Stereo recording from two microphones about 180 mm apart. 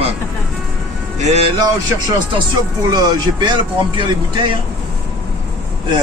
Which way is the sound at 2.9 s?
20° right (ahead or behind).